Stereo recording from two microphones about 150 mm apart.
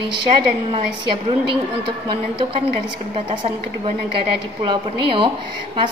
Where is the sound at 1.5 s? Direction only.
35° right (ahead or behind).